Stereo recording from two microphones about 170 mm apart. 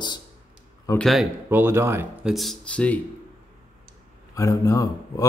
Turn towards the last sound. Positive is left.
turn(degrees=20)  # may be behind; listen again after turning